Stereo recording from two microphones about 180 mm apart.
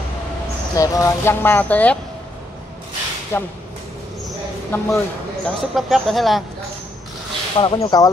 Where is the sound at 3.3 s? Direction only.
15° left (ahead or behind).